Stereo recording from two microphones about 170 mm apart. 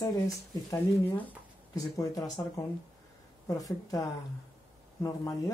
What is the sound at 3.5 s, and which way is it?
Speech, 20° left (ahead or behind).